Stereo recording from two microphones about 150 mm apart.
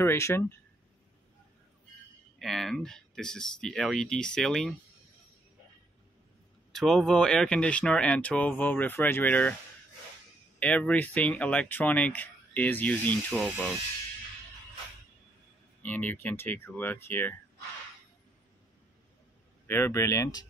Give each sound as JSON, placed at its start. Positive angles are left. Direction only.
{"t": 0.0, "sound": "speech", "side_deg": 15}
{"t": 2.3, "sound": "speech", "side_deg": 0}
{"t": 6.7, "sound": "speech", "side_deg": 5}
{"t": 10.6, "sound": "speech", "side_deg": 10}
{"t": 15.8, "sound": "speech", "side_deg": 10}
{"t": 19.7, "sound": "speech", "side_deg": 20}